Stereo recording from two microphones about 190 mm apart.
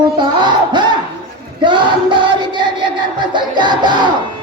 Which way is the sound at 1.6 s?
25° right (ahead or behind).